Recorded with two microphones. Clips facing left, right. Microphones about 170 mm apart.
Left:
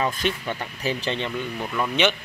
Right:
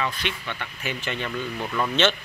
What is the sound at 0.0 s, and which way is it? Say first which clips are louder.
Speech: left 4 dB; 35° left (ahead or behind).